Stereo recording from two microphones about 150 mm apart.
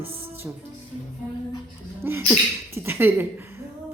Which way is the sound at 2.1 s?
15° right (ahead or behind).